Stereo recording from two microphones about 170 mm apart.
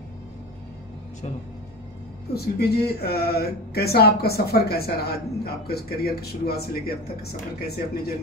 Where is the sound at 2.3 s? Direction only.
65° left (ahead or behind).